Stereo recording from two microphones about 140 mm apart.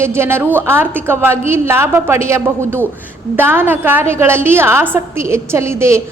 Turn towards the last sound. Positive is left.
turn(degrees=-20)  # may be behind; listen again after turning